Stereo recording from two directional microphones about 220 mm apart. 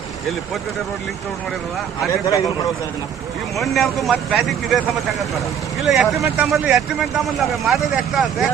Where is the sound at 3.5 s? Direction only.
Centre (ahead or behind).